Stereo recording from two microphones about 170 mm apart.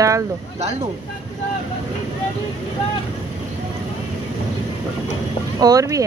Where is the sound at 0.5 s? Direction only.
40° right (ahead or behind).